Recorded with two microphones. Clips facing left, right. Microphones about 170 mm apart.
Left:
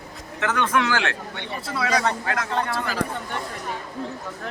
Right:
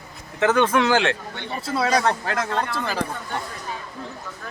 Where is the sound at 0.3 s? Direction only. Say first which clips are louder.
Right 5 dB; 20° right (ahead or behind).